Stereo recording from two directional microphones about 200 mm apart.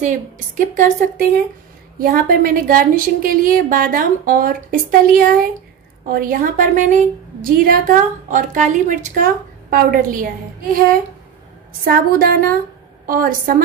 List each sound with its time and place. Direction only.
0.7 s a woman's voice: 40° right (ahead or behind)